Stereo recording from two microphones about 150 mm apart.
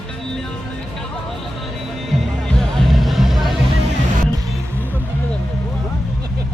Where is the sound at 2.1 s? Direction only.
Centre (ahead or behind).